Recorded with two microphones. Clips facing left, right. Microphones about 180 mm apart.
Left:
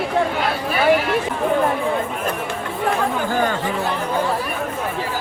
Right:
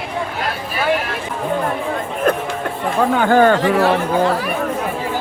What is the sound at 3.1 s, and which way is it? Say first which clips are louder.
Speech: right 8 dB; 70° right (ahead or behind).